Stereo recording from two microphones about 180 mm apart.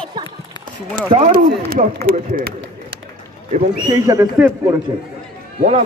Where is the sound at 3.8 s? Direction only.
20° right (ahead or behind).